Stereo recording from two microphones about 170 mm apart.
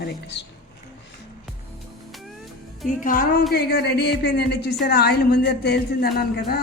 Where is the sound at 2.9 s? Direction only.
55° left (ahead or behind).